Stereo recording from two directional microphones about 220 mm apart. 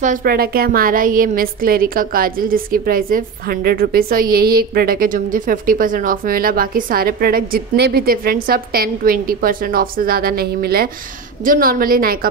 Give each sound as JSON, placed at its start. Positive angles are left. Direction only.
{"t": 0.0, "sound": "a woman's voice", "side_deg": -40}